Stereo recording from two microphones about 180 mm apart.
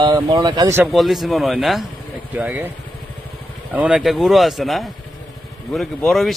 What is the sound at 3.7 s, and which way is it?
Speech, 5° right (ahead or behind).